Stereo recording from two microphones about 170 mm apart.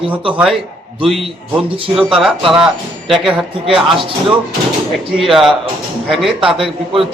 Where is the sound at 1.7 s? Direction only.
30° right (ahead or behind).